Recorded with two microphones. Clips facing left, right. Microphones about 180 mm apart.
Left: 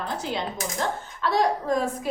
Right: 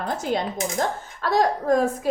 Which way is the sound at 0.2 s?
45° right (ahead or behind).